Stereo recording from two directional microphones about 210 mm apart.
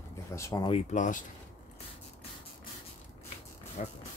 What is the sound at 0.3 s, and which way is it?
Speech, 15° left (ahead or behind).